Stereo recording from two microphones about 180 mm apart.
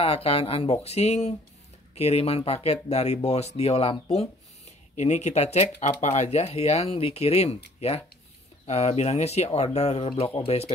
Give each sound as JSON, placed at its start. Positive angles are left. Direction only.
{"t": 0.0, "sound": "speech", "side_deg": 35}
{"t": 8.6, "sound": "speech", "side_deg": 35}